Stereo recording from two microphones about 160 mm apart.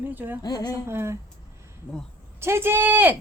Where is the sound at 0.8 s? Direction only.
15° right (ahead or behind).